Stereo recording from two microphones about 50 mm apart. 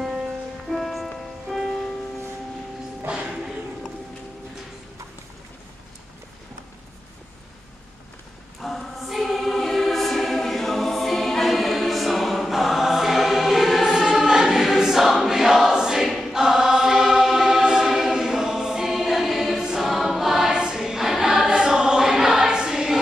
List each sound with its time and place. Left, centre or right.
0.0 s music: centre
3.1 s music: right
8.5 s choir: centre